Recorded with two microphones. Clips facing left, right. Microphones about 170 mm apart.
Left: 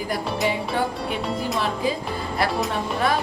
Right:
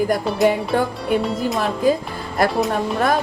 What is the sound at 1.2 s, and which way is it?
Speech, centre (ahead or behind).